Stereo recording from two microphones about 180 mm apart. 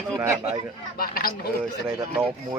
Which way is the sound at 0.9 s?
55° left (ahead or behind).